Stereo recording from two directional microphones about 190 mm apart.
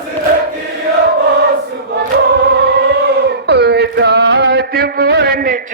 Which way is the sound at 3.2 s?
60° right (ahead or behind).